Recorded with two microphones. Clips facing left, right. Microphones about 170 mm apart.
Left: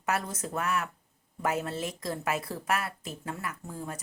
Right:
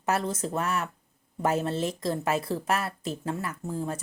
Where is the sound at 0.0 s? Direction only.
30° right (ahead or behind).